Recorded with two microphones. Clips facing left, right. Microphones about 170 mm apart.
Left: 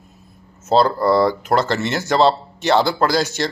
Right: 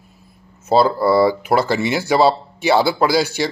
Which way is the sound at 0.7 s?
5° right (ahead or behind).